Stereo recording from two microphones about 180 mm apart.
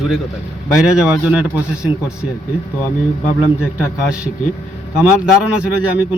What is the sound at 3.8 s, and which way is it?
Speech, 5° right (ahead or behind).